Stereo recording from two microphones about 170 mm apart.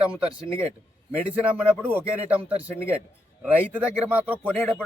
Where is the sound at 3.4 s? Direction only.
10° right (ahead or behind).